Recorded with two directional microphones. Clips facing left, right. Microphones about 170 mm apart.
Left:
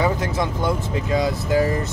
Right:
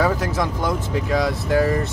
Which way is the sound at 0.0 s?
Centre (ahead or behind).